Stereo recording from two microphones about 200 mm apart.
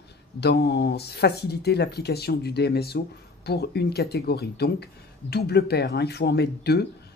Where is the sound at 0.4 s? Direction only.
55° left (ahead or behind).